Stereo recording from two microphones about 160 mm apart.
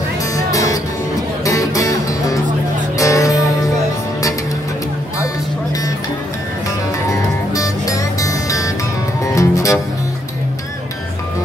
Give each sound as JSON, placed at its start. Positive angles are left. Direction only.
{"t": 0.5, "sound": "music", "side_deg": 20}
{"t": 7.1, "sound": "music", "side_deg": 20}